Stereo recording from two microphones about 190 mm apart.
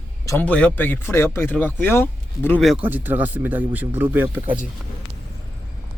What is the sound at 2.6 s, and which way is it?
Speech, 5° right (ahead or behind).